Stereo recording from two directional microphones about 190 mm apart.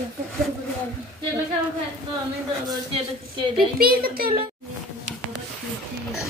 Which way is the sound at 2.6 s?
25° right (ahead or behind).